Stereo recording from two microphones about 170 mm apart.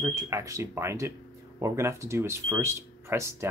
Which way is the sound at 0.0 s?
15° right (ahead or behind).